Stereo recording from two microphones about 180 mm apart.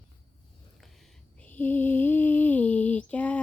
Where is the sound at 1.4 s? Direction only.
10° left (ahead or behind).